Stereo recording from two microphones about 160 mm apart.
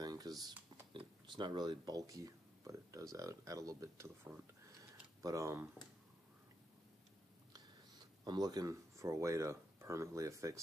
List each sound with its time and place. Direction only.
0.0 s typing: 25° right (ahead or behind)
0.9 s speech: 30° right (ahead or behind)
8.2 s speech: 25° right (ahead or behind)